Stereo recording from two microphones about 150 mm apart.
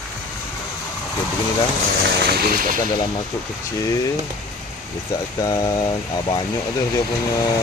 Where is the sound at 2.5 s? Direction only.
65° right (ahead or behind).